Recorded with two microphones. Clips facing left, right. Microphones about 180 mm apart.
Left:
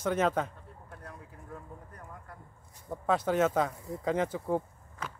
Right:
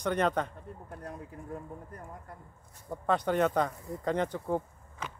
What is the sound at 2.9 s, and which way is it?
Speech, 5° left (ahead or behind).